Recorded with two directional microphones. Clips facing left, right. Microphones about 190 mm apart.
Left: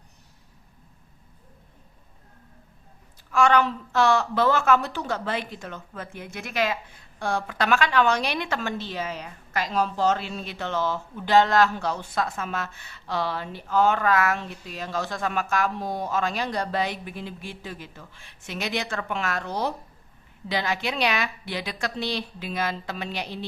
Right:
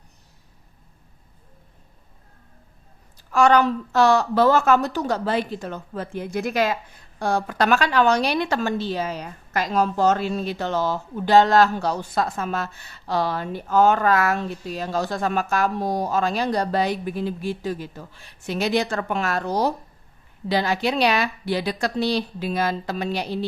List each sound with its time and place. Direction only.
3.3 s a woman's voice: 40° right (ahead or behind)